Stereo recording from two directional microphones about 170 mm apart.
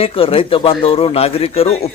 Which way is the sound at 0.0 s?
35° left (ahead or behind).